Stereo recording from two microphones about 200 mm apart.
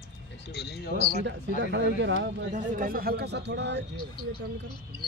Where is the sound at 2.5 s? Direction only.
40° right (ahead or behind); by 3.8 s 60° right (ahead or behind).